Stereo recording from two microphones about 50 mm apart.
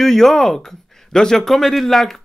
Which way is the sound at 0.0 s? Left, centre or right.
Centre.